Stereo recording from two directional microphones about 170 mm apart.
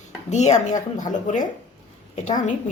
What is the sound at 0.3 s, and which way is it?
A woman's voice, 45° left (ahead or behind).